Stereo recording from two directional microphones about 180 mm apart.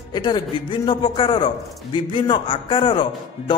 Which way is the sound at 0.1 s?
25° left (ahead or behind).